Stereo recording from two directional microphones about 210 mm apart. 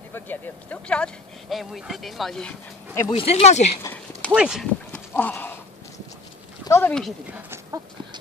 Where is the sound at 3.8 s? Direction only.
5° left (ahead or behind).